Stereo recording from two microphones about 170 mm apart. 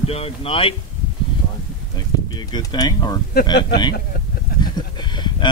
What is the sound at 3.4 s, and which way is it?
Speech, 70° left (ahead or behind).